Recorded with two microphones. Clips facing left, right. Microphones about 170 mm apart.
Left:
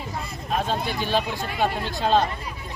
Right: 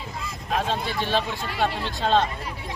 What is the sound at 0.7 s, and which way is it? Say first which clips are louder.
Speech: left 2 dB; centre (ahead or behind).